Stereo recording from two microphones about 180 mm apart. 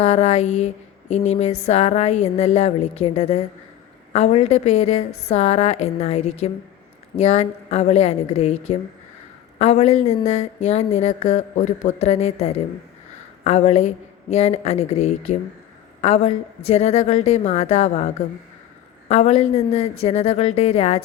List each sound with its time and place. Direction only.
0.0 s a woman's voice: 35° left (ahead or behind)